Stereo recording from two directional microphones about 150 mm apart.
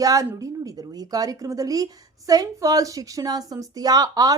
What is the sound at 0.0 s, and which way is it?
Speech, 25° right (ahead or behind).